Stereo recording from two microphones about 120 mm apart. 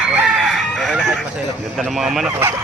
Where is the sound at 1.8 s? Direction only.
5° right (ahead or behind).